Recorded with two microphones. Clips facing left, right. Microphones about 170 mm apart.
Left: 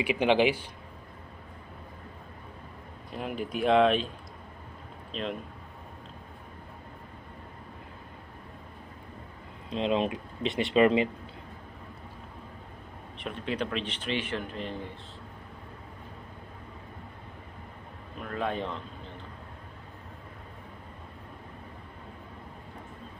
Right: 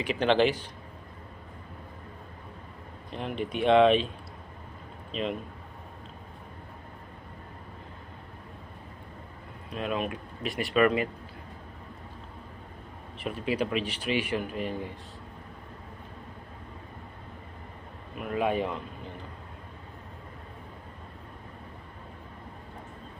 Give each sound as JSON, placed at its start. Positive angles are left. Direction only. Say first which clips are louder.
{"t": 0.0, "sound": "a man's voice", "louder": "even", "side_deg": 10}
{"t": 3.1, "sound": "speech", "louder": "right 1 dB", "side_deg": 5}
{"t": 5.1, "sound": "speech", "louder": "right 3 dB", "side_deg": 0}
{"t": 9.7, "sound": "speech", "louder": "left 4 dB", "side_deg": 25}
{"t": 13.2, "sound": "a man's voice", "louder": "right 3 dB", "side_deg": -5}
{"t": 18.1, "sound": "a man's voice", "louder": "right 4 dB", "side_deg": -10}